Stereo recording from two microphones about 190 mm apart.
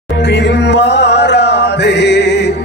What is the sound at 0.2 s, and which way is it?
Music, 65° left (ahead or behind).